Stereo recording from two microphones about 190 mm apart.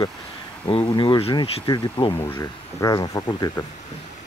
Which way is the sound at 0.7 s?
25° left (ahead or behind).